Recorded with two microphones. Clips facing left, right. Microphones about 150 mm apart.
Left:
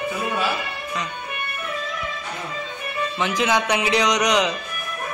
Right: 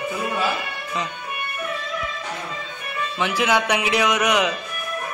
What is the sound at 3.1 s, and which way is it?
Speech, 10° right (ahead or behind).